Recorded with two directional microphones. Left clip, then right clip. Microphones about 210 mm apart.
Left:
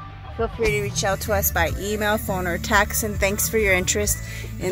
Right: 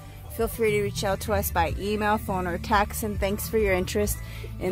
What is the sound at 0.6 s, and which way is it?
Speech, 15° right (ahead or behind).